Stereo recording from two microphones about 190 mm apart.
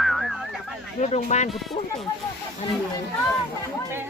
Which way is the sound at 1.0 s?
40° left (ahead or behind).